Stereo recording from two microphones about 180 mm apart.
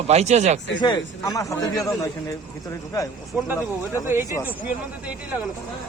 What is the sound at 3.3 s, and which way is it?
Speech, 10° right (ahead or behind).